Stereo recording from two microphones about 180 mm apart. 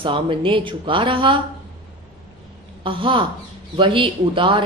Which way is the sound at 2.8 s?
30° right (ahead or behind).